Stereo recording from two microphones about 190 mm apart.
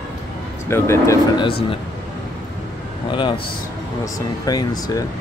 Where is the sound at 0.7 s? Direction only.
15° left (ahead or behind).